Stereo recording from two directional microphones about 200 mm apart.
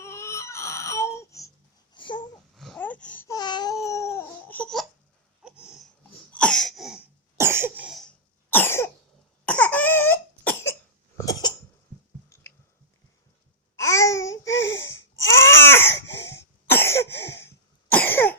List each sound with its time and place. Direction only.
0.0 s baby cry: 15° left (ahead or behind)
1.9 s babbling: 25° left (ahead or behind)
2.6 s babbling: 5° left (ahead or behind)
5.4 s a sound: 5° right (ahead or behind)
7.3 s cough: 10° right (ahead or behind); by 11.5 s 20° left (ahead or behind)
12.3 s a sound: 10° left (ahead or behind)
13.7 s babbling: 15° left (ahead or behind)
14.4 s babbling: 70° left (ahead or behind)
15.2 s baby cry: 10° left (ahead or behind)
16.2 s cough: 10° left (ahead or behind)
17.1 s cough: 60° left (ahead or behind)
17.9 s cough: 10° left (ahead or behind)